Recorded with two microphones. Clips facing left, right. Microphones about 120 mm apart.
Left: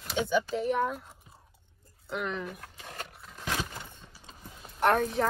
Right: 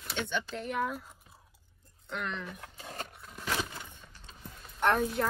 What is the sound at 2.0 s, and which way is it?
Speech, 5° left (ahead or behind).